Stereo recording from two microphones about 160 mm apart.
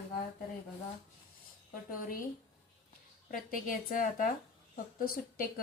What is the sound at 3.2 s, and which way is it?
Speech, 60° left (ahead or behind).